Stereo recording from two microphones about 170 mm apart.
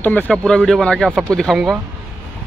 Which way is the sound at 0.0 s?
10° left (ahead or behind).